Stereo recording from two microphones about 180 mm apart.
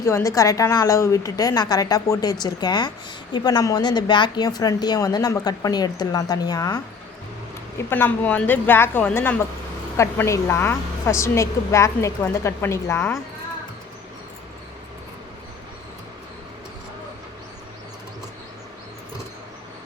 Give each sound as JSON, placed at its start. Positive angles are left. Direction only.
{"t": 0.0, "sound": "a woman's voice", "side_deg": 15}